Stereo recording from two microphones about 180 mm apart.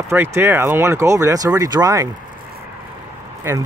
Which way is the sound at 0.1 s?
15° right (ahead or behind).